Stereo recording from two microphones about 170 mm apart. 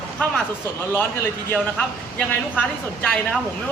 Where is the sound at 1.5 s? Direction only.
5° left (ahead or behind).